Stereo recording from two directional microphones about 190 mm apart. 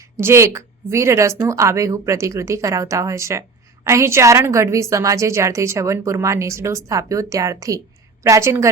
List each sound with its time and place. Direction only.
0.2 s a woman's voice: 15° right (ahead or behind)